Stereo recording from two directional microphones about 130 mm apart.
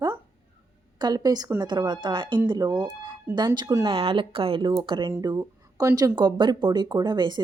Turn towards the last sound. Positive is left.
turn(degrees=-35)  # may be behind; listen again after turning